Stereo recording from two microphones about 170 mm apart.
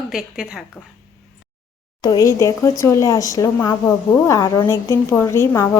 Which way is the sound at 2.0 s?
20° left (ahead or behind).